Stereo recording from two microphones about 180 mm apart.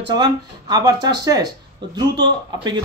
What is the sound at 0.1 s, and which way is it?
Speech, 20° right (ahead or behind).